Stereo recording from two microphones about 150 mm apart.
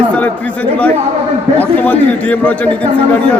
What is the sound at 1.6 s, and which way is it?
A man's voice, 10° left (ahead or behind).